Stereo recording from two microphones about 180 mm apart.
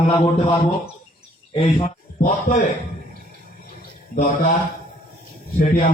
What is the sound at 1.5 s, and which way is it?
A man's voice, 40° left (ahead or behind).